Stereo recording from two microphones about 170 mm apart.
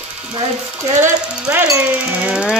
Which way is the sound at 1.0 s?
10° right (ahead or behind).